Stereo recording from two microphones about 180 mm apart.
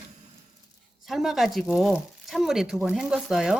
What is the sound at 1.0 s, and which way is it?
Speech, centre (ahead or behind).